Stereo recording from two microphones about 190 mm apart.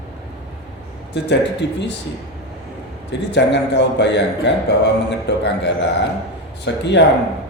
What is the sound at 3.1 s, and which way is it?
A man's voice, 65° left (ahead or behind).